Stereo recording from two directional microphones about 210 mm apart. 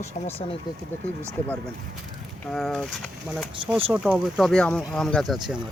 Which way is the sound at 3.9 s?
5° right (ahead or behind).